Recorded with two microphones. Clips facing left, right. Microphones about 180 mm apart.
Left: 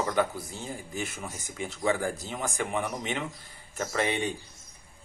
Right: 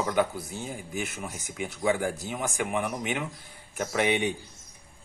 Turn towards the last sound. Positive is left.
turn(degrees=-15)  # may be behind; listen again after turning